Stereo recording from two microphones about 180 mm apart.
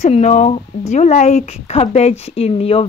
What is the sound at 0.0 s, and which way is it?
Speech, 40° left (ahead or behind).